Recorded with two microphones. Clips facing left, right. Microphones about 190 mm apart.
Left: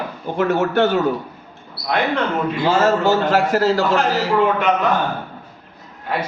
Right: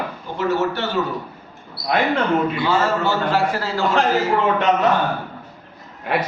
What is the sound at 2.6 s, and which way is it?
A man's voice, 45° left (ahead or behind).